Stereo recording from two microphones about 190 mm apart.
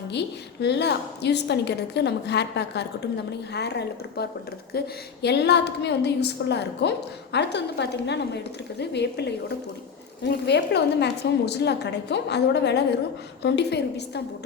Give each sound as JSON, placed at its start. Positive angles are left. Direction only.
{"t": 0.1, "sound": "a woman's voice", "side_deg": 60}